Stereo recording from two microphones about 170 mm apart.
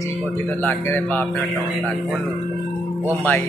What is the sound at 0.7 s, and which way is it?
Speech, 10° left (ahead or behind).